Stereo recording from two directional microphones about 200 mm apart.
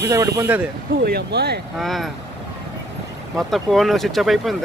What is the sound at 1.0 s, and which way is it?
Speech, 55° right (ahead or behind).